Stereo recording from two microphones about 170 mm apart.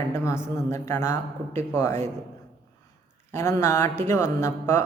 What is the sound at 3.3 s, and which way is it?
A man's voice, 15° left (ahead or behind).